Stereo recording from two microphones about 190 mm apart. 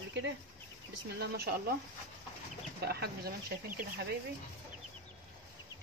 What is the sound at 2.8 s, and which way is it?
Speech, 55° right (ahead or behind).